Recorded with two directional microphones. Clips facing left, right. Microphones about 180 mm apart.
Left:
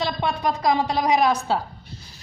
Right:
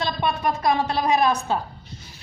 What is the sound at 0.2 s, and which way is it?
Speech, 15° left (ahead or behind).